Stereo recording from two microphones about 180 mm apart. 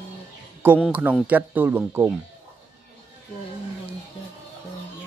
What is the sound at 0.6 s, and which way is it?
Speech, 10° right (ahead or behind).